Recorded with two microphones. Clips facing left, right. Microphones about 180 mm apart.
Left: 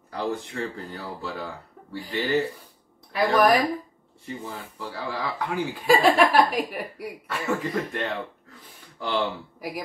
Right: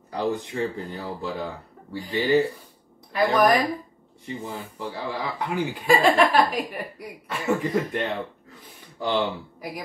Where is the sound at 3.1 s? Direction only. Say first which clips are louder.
Even; centre (ahead or behind).